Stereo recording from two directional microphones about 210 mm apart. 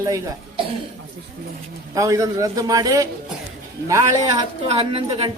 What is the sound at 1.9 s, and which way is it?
Speech, 15° right (ahead or behind).